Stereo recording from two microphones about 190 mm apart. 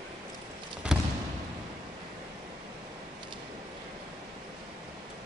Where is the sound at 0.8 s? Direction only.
5° right (ahead or behind).